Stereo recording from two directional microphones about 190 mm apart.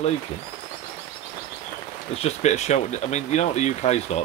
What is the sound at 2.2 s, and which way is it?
Speech, 35° left (ahead or behind).